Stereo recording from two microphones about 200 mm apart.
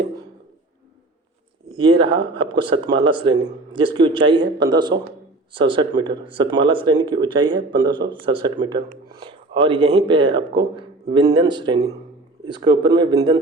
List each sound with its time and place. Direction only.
1.7 s speech: 25° right (ahead or behind)